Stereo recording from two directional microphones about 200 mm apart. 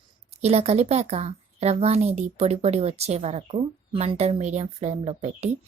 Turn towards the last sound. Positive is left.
turn(degrees=-30)  # may be behind; listen again after turning